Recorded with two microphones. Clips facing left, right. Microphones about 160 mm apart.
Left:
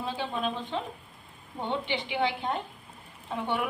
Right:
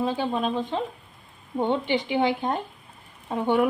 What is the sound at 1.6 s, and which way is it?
A woman's voice, 45° right (ahead or behind).